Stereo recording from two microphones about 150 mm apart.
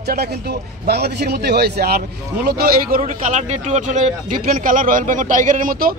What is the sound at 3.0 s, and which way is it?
Speech, 50° right (ahead or behind).